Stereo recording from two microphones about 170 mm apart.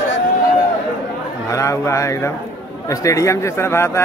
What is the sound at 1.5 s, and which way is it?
Speech, 20° left (ahead or behind).